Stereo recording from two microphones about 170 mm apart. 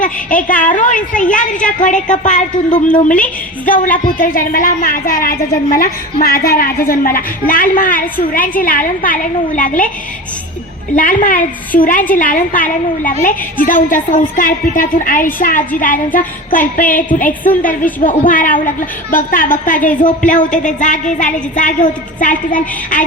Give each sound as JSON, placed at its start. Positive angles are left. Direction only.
{"t": 0.0, "sound": "a woman's voice", "side_deg": 50}
{"t": 10.9, "sound": "a woman's voice", "side_deg": 50}